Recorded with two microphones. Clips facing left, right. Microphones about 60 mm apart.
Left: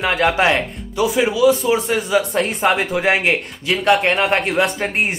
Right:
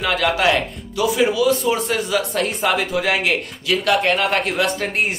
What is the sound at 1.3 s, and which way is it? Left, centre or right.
Speech, centre.